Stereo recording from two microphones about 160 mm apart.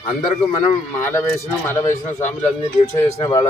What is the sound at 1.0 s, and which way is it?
A man's voice, 15° left (ahead or behind).